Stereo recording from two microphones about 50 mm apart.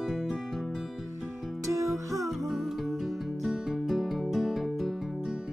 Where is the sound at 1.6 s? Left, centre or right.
Right.